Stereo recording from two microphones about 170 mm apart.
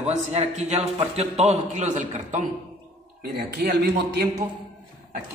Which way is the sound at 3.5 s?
70° right (ahead or behind).